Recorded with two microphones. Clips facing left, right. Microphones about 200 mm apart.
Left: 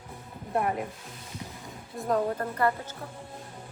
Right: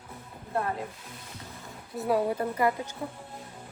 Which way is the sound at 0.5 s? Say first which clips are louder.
Left 2 dB; 20° left (ahead or behind).